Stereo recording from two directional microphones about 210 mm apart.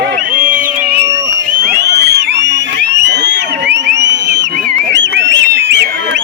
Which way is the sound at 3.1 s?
55° right (ahead or behind).